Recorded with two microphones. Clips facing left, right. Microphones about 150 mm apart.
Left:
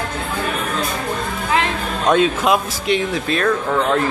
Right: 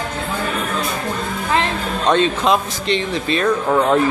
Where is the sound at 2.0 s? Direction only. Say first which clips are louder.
Left 1 dB; 5° left (ahead or behind).